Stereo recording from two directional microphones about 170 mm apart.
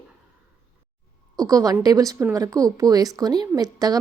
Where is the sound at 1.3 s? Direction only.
20° right (ahead or behind).